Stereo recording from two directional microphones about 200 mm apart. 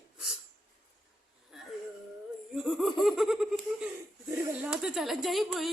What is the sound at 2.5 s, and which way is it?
Laughter, centre (ahead or behind).